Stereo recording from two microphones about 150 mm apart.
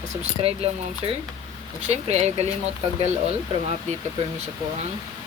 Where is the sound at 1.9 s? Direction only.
45° right (ahead or behind).